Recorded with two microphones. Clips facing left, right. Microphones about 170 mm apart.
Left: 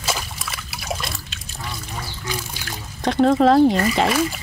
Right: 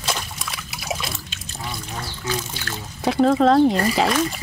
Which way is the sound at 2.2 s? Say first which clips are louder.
Right 4 dB; 10° left (ahead or behind).